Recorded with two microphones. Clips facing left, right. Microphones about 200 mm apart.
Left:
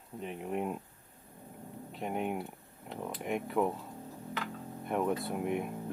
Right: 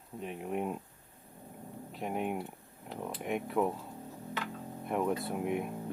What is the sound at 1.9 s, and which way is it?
Speech, centre (ahead or behind).